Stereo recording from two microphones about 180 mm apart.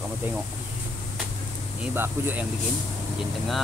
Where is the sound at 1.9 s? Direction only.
10° right (ahead or behind).